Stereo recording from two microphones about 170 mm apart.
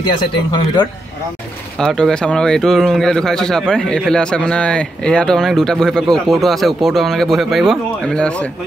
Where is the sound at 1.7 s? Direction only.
5° left (ahead or behind).